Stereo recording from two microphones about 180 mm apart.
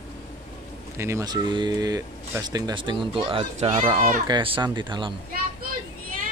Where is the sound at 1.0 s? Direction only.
15° right (ahead or behind).